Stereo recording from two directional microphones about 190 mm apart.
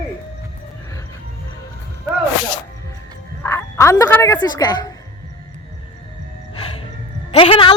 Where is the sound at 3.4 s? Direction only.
15° left (ahead or behind).